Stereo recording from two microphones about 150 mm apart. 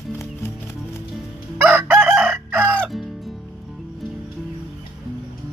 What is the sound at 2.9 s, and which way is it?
Music, centre (ahead or behind).